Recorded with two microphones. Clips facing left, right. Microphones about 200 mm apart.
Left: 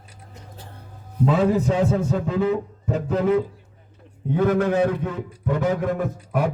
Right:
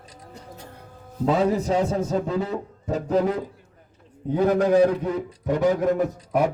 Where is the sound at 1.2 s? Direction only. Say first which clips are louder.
Left 1 dB; 40° right (ahead or behind).